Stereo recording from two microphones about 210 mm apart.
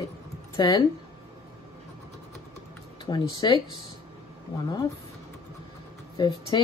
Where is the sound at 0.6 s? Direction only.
20° left (ahead or behind).